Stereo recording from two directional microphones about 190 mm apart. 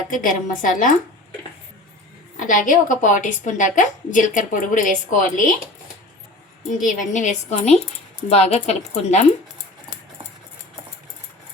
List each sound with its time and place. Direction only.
0.1 s a woman's voice: 45° left (ahead or behind)
2.4 s a woman's voice: 45° left (ahead or behind)
6.7 s a woman's voice: 40° left (ahead or behind)